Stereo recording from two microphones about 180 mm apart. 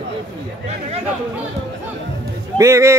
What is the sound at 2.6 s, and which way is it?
Speech, 15° right (ahead or behind).